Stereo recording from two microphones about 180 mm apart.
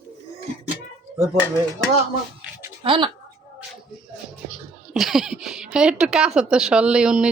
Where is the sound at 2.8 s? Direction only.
30° right (ahead or behind).